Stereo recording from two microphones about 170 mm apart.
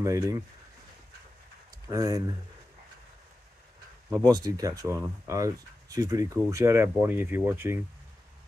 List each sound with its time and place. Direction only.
0.0 s speech: 20° right (ahead or behind)
1.9 s speech: 20° right (ahead or behind)
4.3 s speech: 20° right (ahead or behind)